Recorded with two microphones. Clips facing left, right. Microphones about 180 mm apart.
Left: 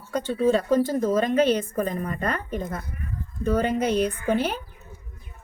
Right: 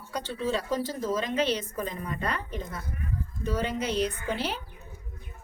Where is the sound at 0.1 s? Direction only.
50° left (ahead or behind).